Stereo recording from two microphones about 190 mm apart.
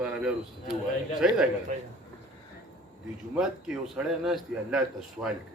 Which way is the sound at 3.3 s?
5° right (ahead or behind).